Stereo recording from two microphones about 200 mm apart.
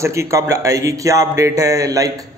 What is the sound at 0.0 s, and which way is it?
A man's voice, 15° right (ahead or behind).